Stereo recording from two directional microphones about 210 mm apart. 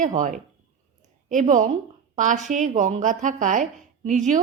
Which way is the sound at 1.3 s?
35° right (ahead or behind).